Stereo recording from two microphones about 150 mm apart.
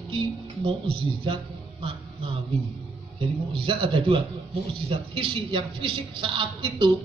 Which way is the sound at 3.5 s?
35° right (ahead or behind).